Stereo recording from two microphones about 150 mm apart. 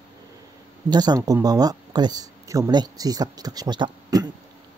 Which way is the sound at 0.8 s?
25° right (ahead or behind).